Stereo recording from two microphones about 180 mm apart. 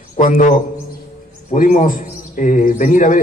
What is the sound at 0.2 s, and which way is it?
A man's voice, 45° left (ahead or behind).